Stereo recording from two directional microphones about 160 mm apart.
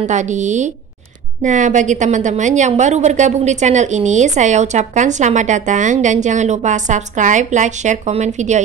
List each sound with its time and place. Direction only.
0.0 s a woman's voice: 50° right (ahead or behind)